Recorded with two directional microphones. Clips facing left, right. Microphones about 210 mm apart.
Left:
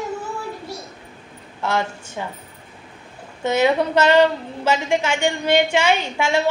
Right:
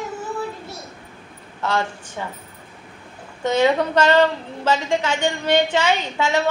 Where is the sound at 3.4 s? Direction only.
10° left (ahead or behind).